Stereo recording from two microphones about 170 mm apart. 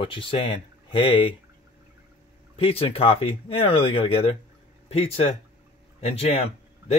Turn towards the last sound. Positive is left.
turn(degrees=35)  # may be behind; listen again after turning